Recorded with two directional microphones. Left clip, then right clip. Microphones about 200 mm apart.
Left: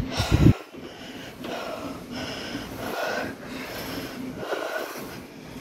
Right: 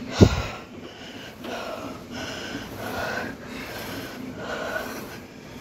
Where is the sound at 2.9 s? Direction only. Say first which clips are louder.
Left 1 dB; 15° left (ahead or behind).